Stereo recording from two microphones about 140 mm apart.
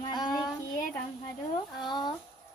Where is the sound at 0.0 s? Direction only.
30° left (ahead or behind).